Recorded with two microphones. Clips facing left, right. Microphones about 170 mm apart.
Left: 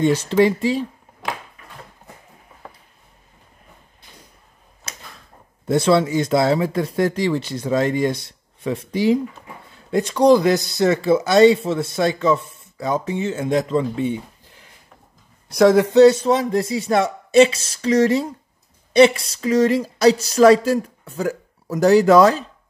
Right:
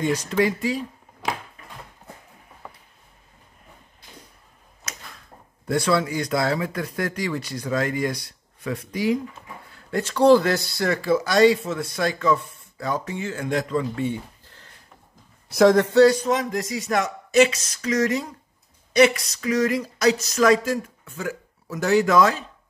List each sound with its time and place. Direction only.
0.0 s speech: 30° left (ahead or behind)
5.7 s speech: 25° left (ahead or behind)
15.4 s speech: centre (ahead or behind)
15.8 s speech: 20° left (ahead or behind); by 22.4 s 35° left (ahead or behind)